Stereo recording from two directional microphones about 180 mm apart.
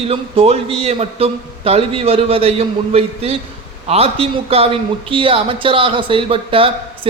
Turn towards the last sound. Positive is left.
turn(degrees=-30)  # may be behind; listen again after turning